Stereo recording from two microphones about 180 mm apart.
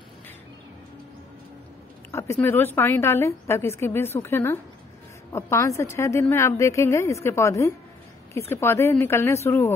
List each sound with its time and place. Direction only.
2.1 s a woman's voice: 15° left (ahead or behind)